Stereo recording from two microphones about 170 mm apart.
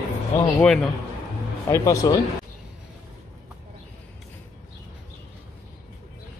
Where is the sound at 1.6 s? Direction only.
20° left (ahead or behind).